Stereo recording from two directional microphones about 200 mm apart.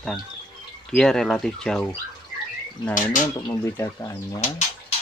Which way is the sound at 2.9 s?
40° left (ahead or behind).